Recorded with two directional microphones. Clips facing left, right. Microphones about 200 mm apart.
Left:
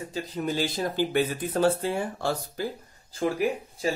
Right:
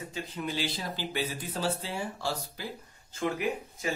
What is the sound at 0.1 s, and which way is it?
Speech, 45° left (ahead or behind).